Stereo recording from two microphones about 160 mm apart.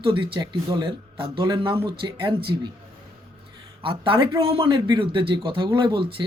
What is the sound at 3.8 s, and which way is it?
Speech, 30° right (ahead or behind).